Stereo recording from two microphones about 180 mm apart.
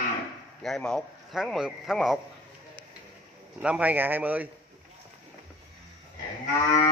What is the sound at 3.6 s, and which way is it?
Speech, 5° right (ahead or behind).